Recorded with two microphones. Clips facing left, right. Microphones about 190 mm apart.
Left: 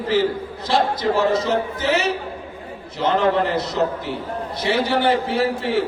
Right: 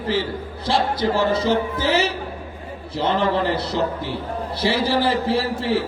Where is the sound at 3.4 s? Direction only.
30° right (ahead or behind).